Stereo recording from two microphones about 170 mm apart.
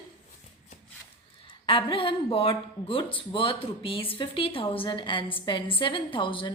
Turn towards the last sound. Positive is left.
turn(degrees=30)  # may be behind; listen again after turning